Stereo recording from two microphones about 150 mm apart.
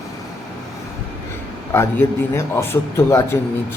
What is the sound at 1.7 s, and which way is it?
A man's voice, 15° left (ahead or behind).